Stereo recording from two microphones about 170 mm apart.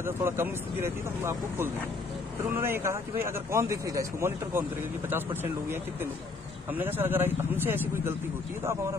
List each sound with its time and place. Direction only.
0.0 s speech: 15° right (ahead or behind)